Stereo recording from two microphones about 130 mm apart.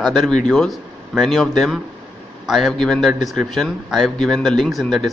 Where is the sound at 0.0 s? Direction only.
Centre (ahead or behind).